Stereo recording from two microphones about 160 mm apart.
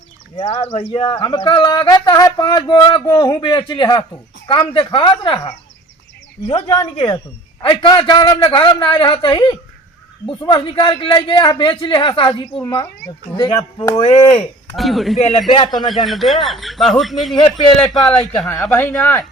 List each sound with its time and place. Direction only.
0.3 s a man's voice: 40° left (ahead or behind)
6.9 s a man's voice: 30° left (ahead or behind)
12.6 s speech: 20° left (ahead or behind)
14.0 s a man's voice: 40° left (ahead or behind)
14.8 s speech: centre (ahead or behind)
15.4 s a man's voice: 35° left (ahead or behind)
16.0 s speech: centre (ahead or behind)
18.6 s speech: 15° left (ahead or behind)